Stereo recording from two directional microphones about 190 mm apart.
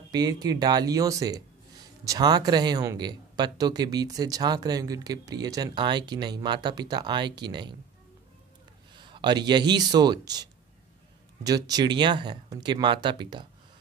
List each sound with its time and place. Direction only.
0.1 s speech: 20° right (ahead or behind)
8.9 s speech: 25° right (ahead or behind)